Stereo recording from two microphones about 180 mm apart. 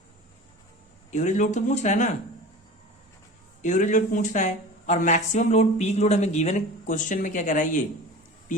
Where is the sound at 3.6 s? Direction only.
45° left (ahead or behind).